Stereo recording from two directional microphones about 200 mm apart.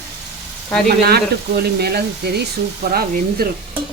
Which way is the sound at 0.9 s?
50° right (ahead or behind).